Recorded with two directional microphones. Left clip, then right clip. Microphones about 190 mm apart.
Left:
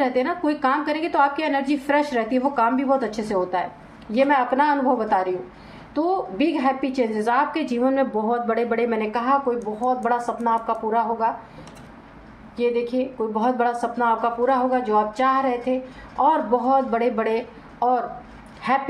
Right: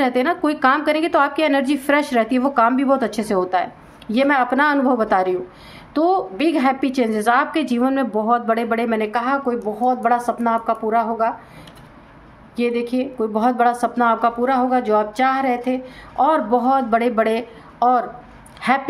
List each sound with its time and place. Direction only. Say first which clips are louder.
0.0 s speech: right 3 dB; 50° right (ahead or behind)
12.5 s speech: right 1 dB; 50° right (ahead or behind)